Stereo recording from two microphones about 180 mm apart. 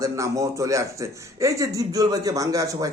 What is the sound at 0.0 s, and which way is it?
A man's voice, 20° right (ahead or behind).